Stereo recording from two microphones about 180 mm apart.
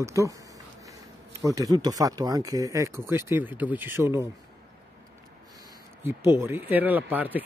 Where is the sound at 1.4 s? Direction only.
20° right (ahead or behind).